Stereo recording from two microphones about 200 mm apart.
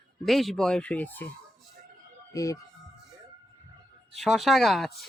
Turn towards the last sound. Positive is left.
turn(degrees=0)  # may be behind; listen again after turning